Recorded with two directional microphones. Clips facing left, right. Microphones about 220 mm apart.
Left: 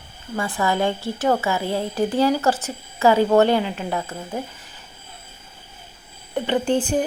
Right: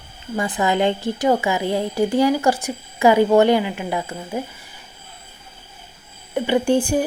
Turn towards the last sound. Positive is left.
turn(degrees=-10)  # may be behind; listen again after turning